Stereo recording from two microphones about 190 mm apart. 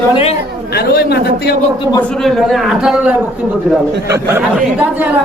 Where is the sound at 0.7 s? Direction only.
55° left (ahead or behind).